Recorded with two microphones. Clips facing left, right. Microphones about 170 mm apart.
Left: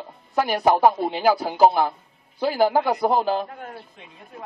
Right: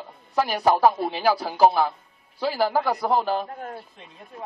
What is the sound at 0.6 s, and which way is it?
Speech, 20° left (ahead or behind).